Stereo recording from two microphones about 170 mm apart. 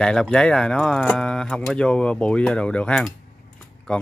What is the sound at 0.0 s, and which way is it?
Speech, 5° left (ahead or behind).